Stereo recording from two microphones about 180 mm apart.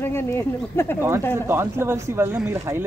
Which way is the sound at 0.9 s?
15° right (ahead or behind).